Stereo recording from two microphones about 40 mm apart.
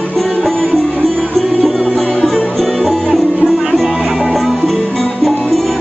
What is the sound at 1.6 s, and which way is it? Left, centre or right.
Music, centre.